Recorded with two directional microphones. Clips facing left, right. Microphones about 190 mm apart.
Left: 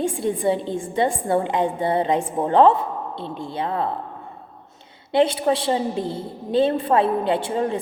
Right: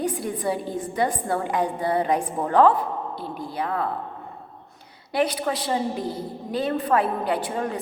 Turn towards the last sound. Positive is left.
turn(degrees=25)  # may be behind; listen again after turning